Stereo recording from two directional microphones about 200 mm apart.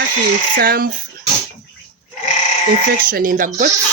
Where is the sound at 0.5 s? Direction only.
50° right (ahead or behind).